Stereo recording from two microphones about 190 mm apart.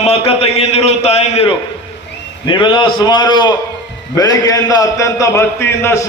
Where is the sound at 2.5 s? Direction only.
25° left (ahead or behind).